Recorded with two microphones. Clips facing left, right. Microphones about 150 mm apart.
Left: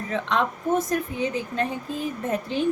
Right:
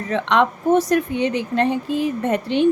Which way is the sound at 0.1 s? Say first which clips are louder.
Right 7 dB; 75° right (ahead or behind).